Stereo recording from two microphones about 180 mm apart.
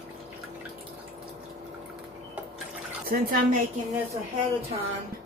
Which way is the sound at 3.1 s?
50° right (ahead or behind).